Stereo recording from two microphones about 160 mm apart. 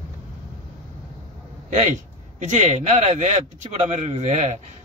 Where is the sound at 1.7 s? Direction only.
50° right (ahead or behind).